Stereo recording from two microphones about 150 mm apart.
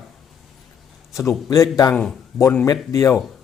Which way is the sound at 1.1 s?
20° left (ahead or behind).